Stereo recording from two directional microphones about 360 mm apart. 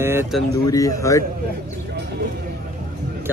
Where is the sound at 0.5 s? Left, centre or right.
Centre.